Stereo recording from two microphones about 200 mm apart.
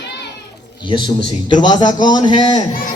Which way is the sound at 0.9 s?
25° left (ahead or behind).